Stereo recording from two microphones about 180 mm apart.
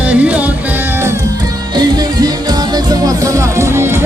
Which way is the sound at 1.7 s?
20° right (ahead or behind).